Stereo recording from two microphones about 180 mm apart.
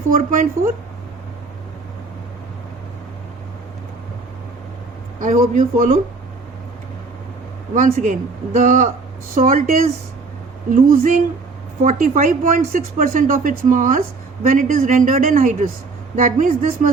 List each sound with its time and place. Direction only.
0.1 s speech: 50° right (ahead or behind)
5.2 s speech: 45° right (ahead or behind)
7.7 s speech: 50° right (ahead or behind)
10.8 s speech: 50° right (ahead or behind)